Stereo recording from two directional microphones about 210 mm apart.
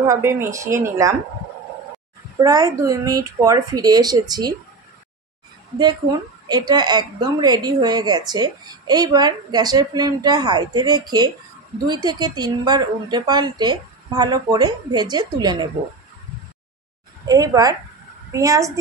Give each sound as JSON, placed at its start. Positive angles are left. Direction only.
{"t": 0.0, "sound": "speech", "side_deg": -15}
{"t": 2.3, "sound": "speech", "side_deg": -15}
{"t": 6.5, "sound": "a woman's voice", "side_deg": -20}
{"t": 17.3, "sound": "speech", "side_deg": -15}